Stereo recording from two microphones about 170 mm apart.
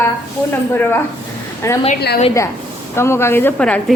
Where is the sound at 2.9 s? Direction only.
15° left (ahead or behind).